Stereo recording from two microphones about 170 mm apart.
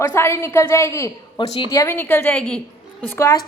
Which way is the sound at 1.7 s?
15° left (ahead or behind).